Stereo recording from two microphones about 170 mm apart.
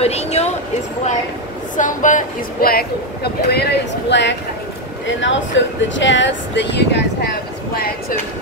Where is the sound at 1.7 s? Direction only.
50° left (ahead or behind); by 7.0 s 90° left.